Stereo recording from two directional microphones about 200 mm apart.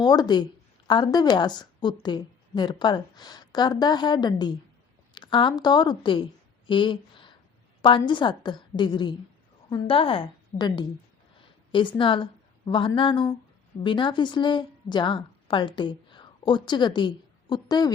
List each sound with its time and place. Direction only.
0.0 s a woman's voice: 20° left (ahead or behind)